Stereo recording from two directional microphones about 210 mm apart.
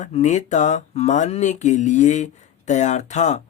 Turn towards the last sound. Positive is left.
turn(degrees=35)  # may be behind; listen again after turning